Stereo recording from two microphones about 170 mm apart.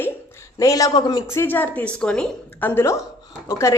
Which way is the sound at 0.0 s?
15° left (ahead or behind).